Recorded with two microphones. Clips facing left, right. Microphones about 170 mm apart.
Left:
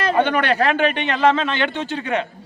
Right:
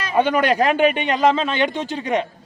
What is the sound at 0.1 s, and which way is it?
A man's voice, 10° right (ahead or behind).